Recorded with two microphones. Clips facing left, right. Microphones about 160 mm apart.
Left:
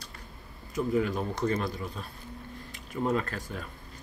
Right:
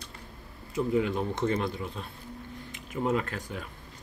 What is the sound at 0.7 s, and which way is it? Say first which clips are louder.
Speech: right 1 dB; 20° right (ahead or behind).